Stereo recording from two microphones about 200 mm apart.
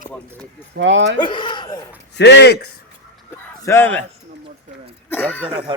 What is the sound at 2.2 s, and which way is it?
Speech, 60° left (ahead or behind).